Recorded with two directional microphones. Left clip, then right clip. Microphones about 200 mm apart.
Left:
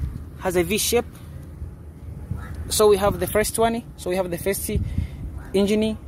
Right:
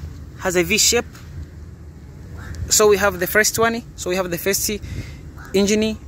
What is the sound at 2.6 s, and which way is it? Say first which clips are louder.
Speech: right 2 dB; 5° right (ahead or behind).